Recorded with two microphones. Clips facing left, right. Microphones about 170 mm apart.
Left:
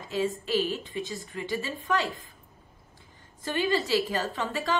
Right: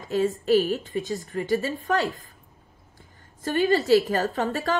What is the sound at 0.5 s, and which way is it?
A woman's voice, 40° right (ahead or behind).